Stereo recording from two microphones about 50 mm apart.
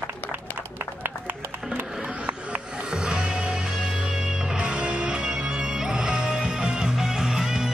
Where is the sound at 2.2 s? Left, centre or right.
Right.